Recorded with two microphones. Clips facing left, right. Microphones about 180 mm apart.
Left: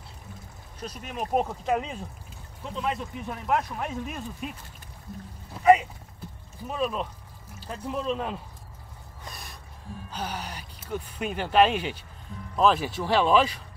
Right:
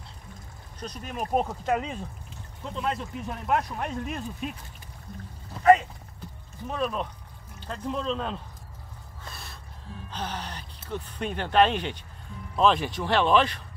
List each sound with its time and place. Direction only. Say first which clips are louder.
0.7 s speech: even; 5° left (ahead or behind)
9.2 s gasp: left 1 dB; 15° left (ahead or behind)
10.1 s speech: even; 10° left (ahead or behind)